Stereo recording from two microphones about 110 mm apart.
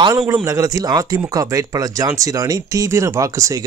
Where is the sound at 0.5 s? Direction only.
35° right (ahead or behind).